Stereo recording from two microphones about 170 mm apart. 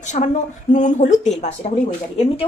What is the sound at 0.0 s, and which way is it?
Speech, 45° left (ahead or behind).